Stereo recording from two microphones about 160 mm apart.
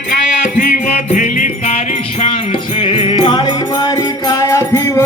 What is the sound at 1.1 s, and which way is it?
Music, 55° left (ahead or behind).